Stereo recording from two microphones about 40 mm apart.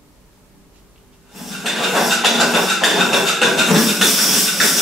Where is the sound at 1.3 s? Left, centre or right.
Centre.